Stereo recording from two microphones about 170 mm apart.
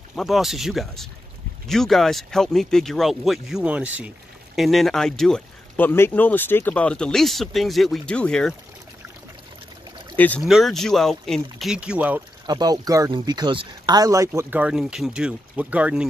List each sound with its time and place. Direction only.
0.1 s speech: centre (ahead or behind)
10.1 s speech: 10° left (ahead or behind); by 12.2 s 5° right (ahead or behind)
12.4 s speech: 25° right (ahead or behind); by 16.1 s 5° right (ahead or behind)